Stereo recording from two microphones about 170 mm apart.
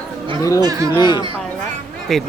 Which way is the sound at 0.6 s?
20° right (ahead or behind).